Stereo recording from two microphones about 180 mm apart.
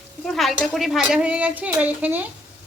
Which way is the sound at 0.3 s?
Centre (ahead or behind).